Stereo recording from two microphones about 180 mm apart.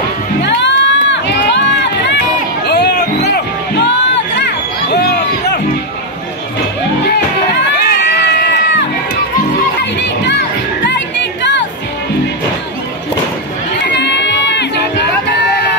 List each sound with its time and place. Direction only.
0.4 s run: 80° left
2.6 s music: 65° left (ahead or behind)
4.9 s a sound: 65° left (ahead or behind)
7.7 s crowd: 65° left (ahead or behind)
9.9 s children playing: 75° left (ahead or behind)
13.8 s music: 75° left (ahead or behind)